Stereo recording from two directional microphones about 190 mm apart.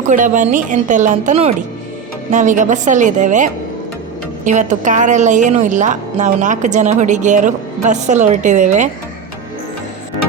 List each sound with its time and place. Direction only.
0.1 s a woman's voice: 40° right (ahead or behind)